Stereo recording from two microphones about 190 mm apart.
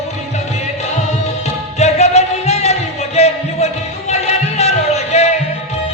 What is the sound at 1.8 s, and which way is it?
Music, 35° left (ahead or behind).